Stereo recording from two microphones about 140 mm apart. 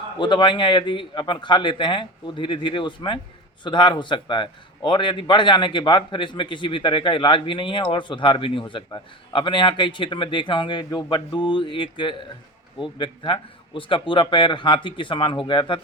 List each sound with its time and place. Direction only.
0.2 s a man's voice: 35° left (ahead or behind)